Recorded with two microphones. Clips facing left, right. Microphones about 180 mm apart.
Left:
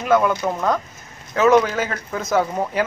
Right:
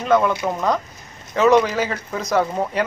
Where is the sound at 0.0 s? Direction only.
5° left (ahead or behind).